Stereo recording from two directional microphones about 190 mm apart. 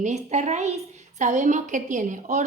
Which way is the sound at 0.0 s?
40° right (ahead or behind).